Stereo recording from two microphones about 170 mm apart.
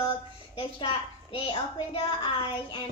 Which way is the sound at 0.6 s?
30° left (ahead or behind).